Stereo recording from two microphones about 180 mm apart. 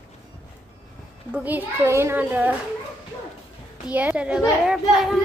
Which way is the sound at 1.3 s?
10° right (ahead or behind).